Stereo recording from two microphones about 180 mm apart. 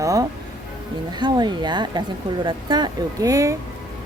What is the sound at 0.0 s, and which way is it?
Music, 20° right (ahead or behind).